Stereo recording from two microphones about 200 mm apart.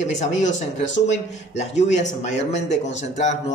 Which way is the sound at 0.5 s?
35° left (ahead or behind).